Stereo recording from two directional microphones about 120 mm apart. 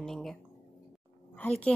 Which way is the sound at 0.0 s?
Centre (ahead or behind).